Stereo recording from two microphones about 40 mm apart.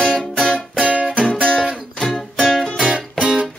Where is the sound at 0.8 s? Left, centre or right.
Right.